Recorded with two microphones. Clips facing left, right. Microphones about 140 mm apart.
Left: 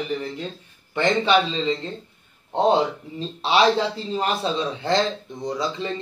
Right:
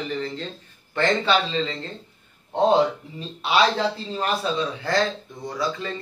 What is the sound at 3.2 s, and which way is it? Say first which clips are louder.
Speech: left 2 dB; 30° left (ahead or behind).